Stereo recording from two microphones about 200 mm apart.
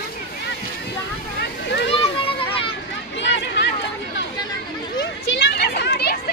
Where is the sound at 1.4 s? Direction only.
60° left (ahead or behind).